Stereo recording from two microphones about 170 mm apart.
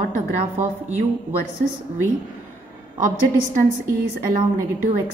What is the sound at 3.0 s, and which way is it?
A woman's voice, 50° right (ahead or behind).